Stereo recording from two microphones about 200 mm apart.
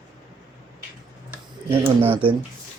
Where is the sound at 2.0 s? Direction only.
25° right (ahead or behind).